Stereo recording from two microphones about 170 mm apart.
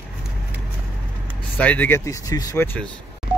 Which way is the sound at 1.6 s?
10° left (ahead or behind).